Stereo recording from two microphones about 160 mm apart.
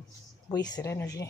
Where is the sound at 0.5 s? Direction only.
25° left (ahead or behind).